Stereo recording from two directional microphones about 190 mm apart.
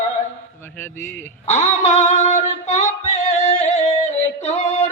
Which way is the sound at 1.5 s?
35° left (ahead or behind).